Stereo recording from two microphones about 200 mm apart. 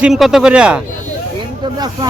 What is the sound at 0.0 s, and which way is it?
Speech, centre (ahead or behind).